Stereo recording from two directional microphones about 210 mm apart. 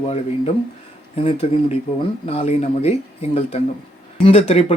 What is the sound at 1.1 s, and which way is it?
Speech, 25° left (ahead or behind).